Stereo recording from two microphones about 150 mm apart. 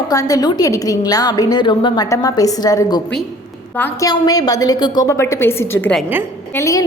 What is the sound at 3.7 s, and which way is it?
Speech, 15° left (ahead or behind).